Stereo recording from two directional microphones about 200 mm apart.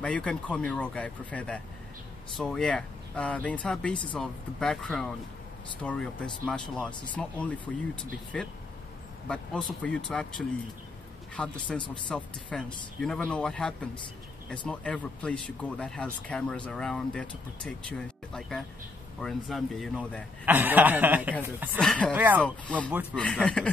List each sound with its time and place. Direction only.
0.0 s speech: 5° left (ahead or behind)
3.9 s speech: 25° left (ahead or behind)
4.2 s speech: 5° left (ahead or behind)
20.4 s chuckle: 10° right (ahead or behind)
21.7 s speech: 5° left (ahead or behind)
22.1 s chuckle: 10° right (ahead or behind)
22.4 s speech: 5° left (ahead or behind)